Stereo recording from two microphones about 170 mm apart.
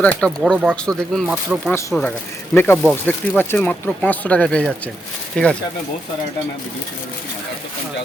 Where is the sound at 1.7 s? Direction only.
15° left (ahead or behind).